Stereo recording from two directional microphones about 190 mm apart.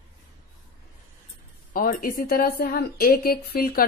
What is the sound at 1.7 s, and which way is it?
A woman's voice, 50° left (ahead or behind).